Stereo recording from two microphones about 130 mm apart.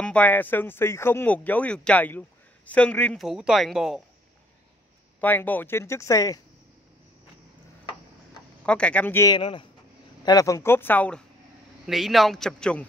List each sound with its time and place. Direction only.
0.0 s speech: 10° left (ahead or behind)
3.2 s a man's voice: 5° right (ahead or behind)
5.2 s speech: 15° left (ahead or behind)
8.6 s speech: 10° left (ahead or behind)
9.4 s speech: 40° left (ahead or behind)
10.2 s speech: 25° left (ahead or behind); by 11.2 s 10° left (ahead or behind)
11.8 s a man's voice: centre (ahead or behind)